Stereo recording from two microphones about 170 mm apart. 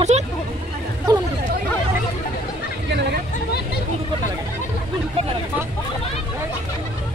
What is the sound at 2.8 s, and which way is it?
Chatter, 80° right.